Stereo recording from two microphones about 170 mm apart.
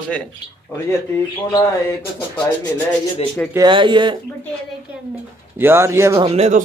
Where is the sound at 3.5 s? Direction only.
25° right (ahead or behind).